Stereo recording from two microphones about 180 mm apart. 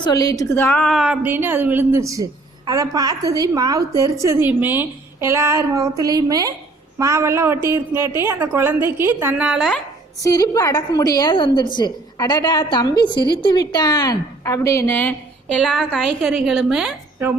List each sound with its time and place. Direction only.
0.0 s a woman's voice: 20° left (ahead or behind); by 9.8 s centre (ahead or behind)
10.2 s a woman's voice: 20° left (ahead or behind); by 17.3 s 10° right (ahead or behind)